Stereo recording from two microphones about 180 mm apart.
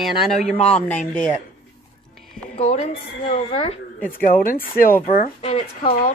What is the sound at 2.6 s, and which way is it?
Speech, 35° left (ahead or behind).